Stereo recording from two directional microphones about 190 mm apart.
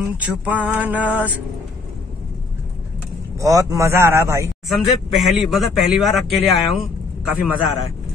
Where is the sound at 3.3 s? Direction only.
15° right (ahead or behind).